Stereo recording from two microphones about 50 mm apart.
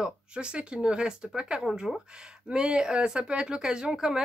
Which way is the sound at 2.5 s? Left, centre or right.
Centre.